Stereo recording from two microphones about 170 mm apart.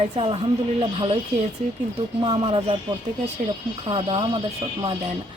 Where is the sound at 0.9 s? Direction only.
30° right (ahead or behind).